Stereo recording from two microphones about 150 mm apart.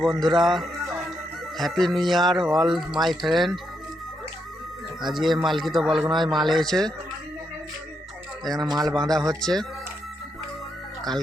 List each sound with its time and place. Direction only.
0.0 s speech: centre (ahead or behind)
5.0 s speech: centre (ahead or behind)
6.0 s speech: 30° right (ahead or behind)
6.3 s speech: centre (ahead or behind)
8.6 s speech: 25° right (ahead or behind)
9.4 s speech: 5° left (ahead or behind)